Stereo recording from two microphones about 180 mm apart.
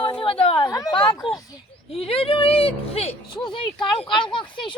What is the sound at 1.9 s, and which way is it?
Speech, 30° left (ahead or behind).